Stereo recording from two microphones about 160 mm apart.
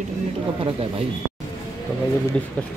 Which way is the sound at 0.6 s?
40° right (ahead or behind).